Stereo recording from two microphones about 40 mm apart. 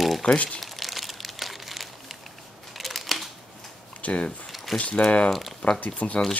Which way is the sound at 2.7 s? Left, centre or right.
Centre.